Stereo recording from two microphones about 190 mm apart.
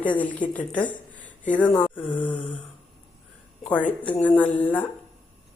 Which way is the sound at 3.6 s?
10° left (ahead or behind).